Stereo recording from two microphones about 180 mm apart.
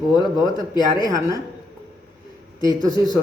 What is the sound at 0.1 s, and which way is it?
A man's voice, 25° left (ahead or behind).